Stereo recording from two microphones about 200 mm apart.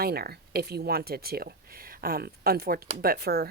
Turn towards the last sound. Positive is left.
turn(degrees=-50)  # may be behind; listen again after turning